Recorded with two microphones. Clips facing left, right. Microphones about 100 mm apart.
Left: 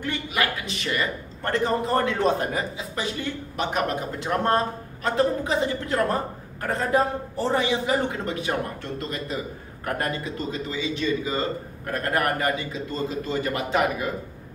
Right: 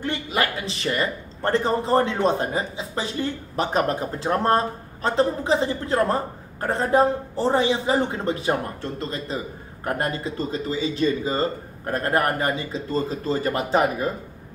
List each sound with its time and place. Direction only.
0.0 s speech: 30° right (ahead or behind)
9.8 s speech: 30° right (ahead or behind)